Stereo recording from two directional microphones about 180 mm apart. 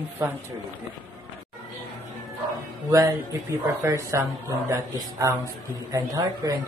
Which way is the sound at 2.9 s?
20° right (ahead or behind).